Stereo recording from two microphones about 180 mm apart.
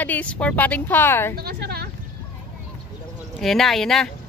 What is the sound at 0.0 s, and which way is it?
A woman's voice, 10° left (ahead or behind).